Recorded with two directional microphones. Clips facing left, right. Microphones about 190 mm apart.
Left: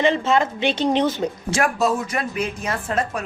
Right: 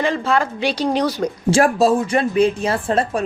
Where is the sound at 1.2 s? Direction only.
30° right (ahead or behind).